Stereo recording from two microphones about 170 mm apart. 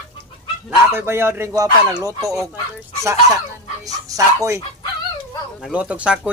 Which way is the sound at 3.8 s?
20° right (ahead or behind).